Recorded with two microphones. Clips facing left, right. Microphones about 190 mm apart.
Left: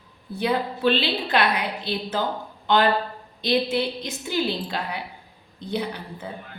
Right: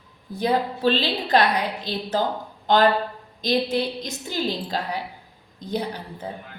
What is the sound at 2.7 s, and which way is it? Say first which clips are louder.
Speech: right 2 dB; 40° right (ahead or behind).